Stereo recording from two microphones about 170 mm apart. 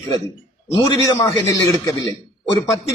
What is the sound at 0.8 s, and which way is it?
Speech, 25° left (ahead or behind).